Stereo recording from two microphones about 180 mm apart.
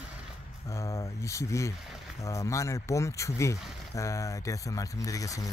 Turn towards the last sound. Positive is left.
turn(degrees=20)  # may be behind; listen again after turning